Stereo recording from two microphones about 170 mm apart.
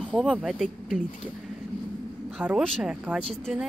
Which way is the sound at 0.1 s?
Centre (ahead or behind).